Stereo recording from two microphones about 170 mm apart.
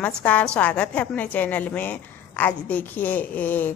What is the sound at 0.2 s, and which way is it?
A woman's voice, 10° left (ahead or behind).